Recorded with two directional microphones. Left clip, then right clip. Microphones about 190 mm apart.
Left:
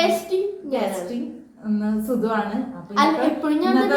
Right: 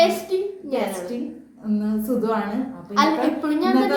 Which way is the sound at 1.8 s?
15° right (ahead or behind).